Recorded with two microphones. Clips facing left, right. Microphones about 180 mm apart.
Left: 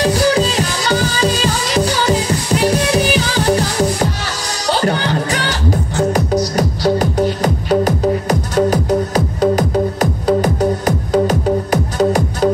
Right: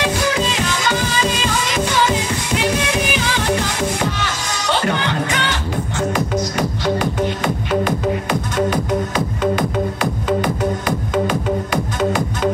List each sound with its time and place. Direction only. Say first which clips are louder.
0.0 s music: left 5 dB; 35° left (ahead or behind)